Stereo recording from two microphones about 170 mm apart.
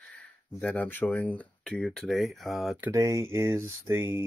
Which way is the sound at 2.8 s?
15° right (ahead or behind).